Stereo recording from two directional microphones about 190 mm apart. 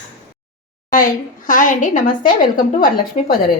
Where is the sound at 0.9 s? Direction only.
45° left (ahead or behind).